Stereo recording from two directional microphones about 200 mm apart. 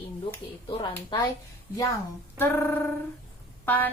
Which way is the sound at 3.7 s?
10° left (ahead or behind).